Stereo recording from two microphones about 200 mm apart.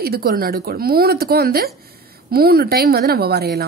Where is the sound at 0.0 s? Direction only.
50° right (ahead or behind).